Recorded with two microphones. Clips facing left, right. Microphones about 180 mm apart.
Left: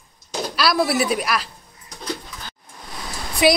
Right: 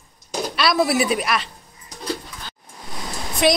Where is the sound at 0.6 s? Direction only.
Centre (ahead or behind).